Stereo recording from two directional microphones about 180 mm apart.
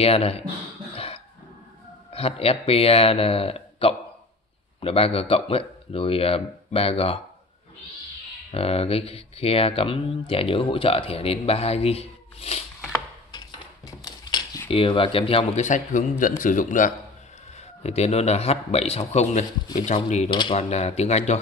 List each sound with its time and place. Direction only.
0.0 s speech: 35° left (ahead or behind)
0.9 s cough: 35° left (ahead or behind)
2.1 s speech: 35° left (ahead or behind)
8.5 s speech: 35° left (ahead or behind)
13.3 s cutlery: 20° left (ahead or behind)
14.7 s speech: 30° left (ahead or behind); by 16.9 s 45° left (ahead or behind)
17.8 s speech: 35° left (ahead or behind)
20.2 s speech: 25° left (ahead or behind)